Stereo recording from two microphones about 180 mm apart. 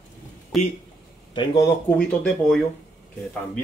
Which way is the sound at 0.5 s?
Centre (ahead or behind).